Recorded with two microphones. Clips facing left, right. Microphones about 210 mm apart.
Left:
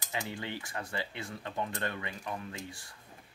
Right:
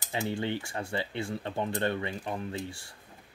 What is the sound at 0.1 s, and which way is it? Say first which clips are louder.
Speech: right 7 dB; 30° right (ahead or behind).